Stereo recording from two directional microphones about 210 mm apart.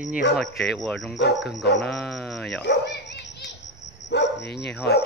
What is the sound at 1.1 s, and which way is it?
Speech, 60° left (ahead or behind).